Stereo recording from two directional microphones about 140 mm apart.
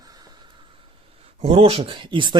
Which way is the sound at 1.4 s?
45° right (ahead or behind).